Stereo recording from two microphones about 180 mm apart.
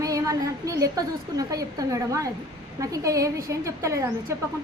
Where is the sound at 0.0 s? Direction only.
20° right (ahead or behind).